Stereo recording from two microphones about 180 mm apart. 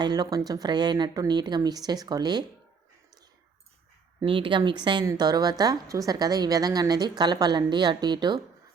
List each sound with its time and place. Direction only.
0.0 s a woman's voice: 20° right (ahead or behind)
4.2 s a woman's voice: 30° right (ahead or behind)